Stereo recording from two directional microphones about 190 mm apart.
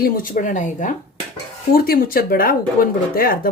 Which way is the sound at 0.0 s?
45° left (ahead or behind).